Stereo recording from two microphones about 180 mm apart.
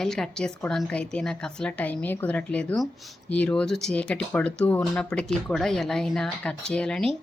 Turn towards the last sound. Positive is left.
turn(degrees=5)  # may be behind; listen again after turning